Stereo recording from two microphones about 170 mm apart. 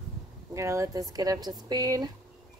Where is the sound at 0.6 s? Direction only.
15° right (ahead or behind).